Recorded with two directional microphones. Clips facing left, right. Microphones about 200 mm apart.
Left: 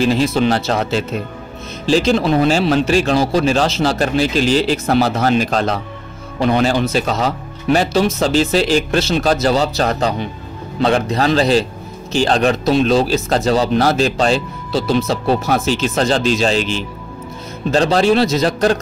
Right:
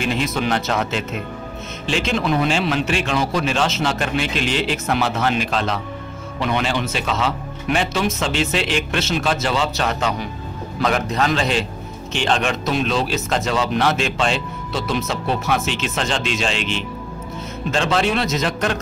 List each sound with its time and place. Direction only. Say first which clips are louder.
0.0 s speech: left 7 dB; 35° left (ahead or behind)